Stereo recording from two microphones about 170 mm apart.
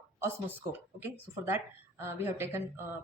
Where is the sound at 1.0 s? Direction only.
15° right (ahead or behind).